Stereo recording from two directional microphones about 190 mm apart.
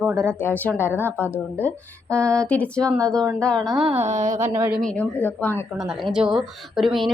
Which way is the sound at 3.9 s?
35° right (ahead or behind).